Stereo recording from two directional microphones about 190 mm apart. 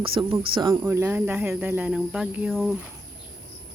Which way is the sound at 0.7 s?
10° right (ahead or behind).